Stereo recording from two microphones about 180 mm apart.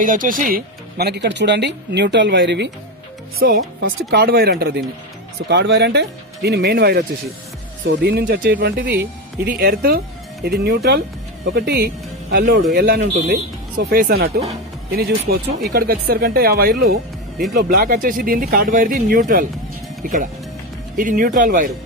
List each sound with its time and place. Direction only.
0.0 s speech: 45° right (ahead or behind); by 2.7 s 75° right (ahead or behind)
3.3 s speech: 50° right (ahead or behind)